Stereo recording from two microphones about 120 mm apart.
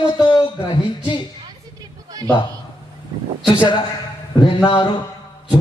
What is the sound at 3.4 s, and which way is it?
Speech, 10° right (ahead or behind).